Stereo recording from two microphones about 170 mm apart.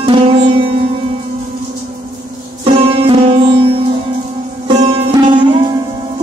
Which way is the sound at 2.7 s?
30° right (ahead or behind).